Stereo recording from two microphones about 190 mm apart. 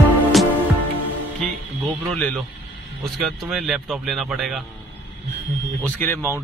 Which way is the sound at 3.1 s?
Centre (ahead or behind).